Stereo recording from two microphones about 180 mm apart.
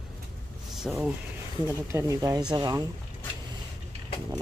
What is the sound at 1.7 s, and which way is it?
Speech, 15° right (ahead or behind).